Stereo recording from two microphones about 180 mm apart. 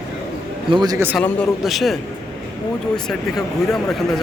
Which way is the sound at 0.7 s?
25° right (ahead or behind).